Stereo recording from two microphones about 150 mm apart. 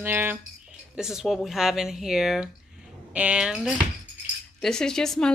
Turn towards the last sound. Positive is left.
turn(degrees=5)  # may be behind; listen again after turning